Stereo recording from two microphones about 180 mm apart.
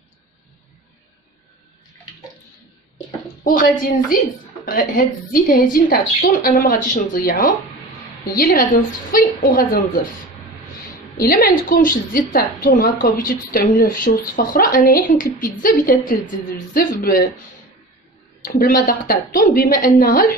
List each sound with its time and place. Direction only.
3.4 s a woman's voice: 50° left (ahead or behind)
11.1 s a woman's voice: 55° left (ahead or behind)
18.4 s a woman's voice: 50° left (ahead or behind)